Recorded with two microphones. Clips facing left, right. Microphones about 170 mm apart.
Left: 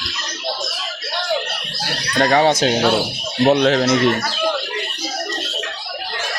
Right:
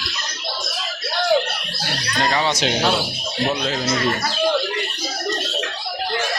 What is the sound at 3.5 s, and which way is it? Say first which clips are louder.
Speech: left 10 dB; 70° left (ahead or behind).